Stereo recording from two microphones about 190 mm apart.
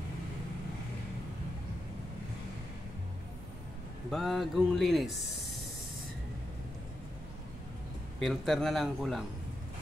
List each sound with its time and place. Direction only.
4.1 s speech: centre (ahead or behind)
8.2 s speech: centre (ahead or behind)